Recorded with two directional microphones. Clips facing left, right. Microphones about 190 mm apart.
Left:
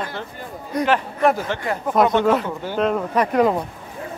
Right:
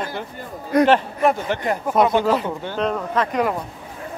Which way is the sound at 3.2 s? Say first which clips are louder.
Left 2 dB; 15° left (ahead or behind).